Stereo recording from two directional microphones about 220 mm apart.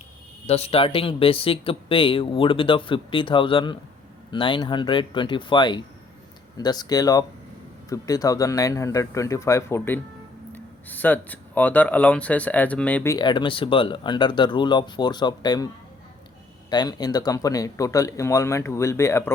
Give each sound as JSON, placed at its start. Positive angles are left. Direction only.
{"t": 0.4, "sound": "speech", "side_deg": 30}